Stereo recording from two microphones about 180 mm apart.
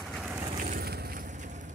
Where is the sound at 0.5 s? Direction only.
45° right (ahead or behind).